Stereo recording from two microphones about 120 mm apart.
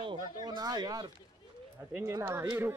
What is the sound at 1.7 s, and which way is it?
Speech, 20° right (ahead or behind).